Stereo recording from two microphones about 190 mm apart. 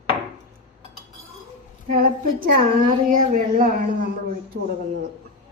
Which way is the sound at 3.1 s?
45° right (ahead or behind).